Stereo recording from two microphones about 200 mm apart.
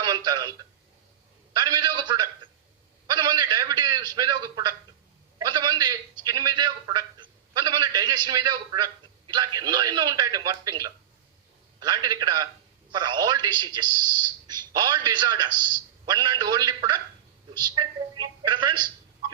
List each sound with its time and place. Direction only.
0.0 s a man's voice: 20° right (ahead or behind)
3.1 s a sound: 20° right (ahead or behind)
5.4 s a man's voice: 20° right (ahead or behind)